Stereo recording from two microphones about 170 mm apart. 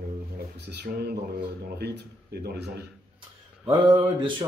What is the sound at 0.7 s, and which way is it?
Speech, 80° right.